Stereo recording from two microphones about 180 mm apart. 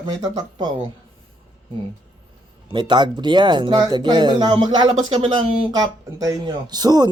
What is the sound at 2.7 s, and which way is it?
Speech, 25° right (ahead or behind).